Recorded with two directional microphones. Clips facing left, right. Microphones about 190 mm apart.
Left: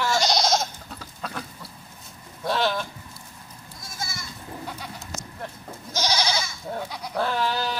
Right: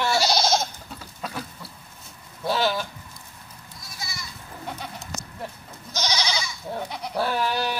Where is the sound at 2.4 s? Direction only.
Centre (ahead or behind).